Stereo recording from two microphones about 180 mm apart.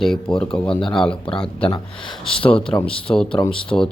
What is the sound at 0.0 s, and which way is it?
Speech, 5° left (ahead or behind).